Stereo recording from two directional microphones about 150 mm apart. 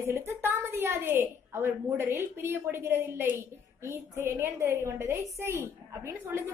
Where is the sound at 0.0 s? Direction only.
20° right (ahead or behind).